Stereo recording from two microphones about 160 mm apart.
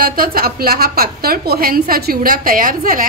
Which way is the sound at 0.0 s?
65° right (ahead or behind).